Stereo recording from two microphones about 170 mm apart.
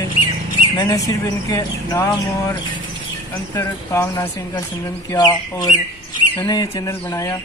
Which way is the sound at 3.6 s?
15° left (ahead or behind).